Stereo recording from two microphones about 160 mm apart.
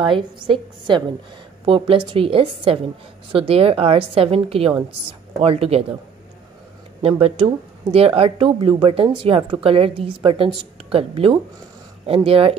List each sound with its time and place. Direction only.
0.0 s speech: 30° right (ahead or behind)
7.0 s speech: 35° right (ahead or behind)